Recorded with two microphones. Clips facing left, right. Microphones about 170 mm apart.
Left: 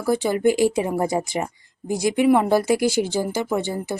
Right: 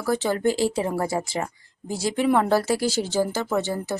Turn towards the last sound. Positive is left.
turn(degrees=15)  # may be behind; listen again after turning